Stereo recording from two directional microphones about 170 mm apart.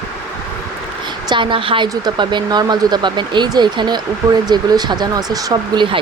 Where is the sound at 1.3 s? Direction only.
30° right (ahead or behind).